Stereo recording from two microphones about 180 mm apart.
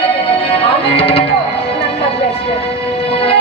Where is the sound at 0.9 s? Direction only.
35° left (ahead or behind).